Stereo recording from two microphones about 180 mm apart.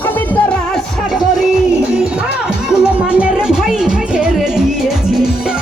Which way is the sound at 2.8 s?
5° right (ahead or behind).